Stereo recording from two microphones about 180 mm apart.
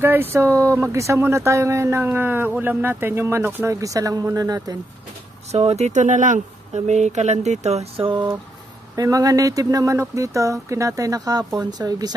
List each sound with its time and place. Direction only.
0.0 s speech: 10° right (ahead or behind)
5.5 s speech: 35° right (ahead or behind)